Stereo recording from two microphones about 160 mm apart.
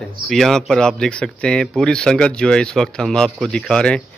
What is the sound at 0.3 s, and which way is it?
A man's voice, centre (ahead or behind).